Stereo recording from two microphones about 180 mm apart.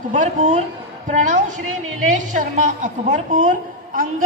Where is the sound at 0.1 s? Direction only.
45° right (ahead or behind).